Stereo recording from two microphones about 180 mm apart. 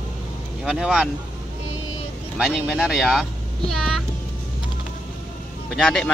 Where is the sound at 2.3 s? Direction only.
5° right (ahead or behind).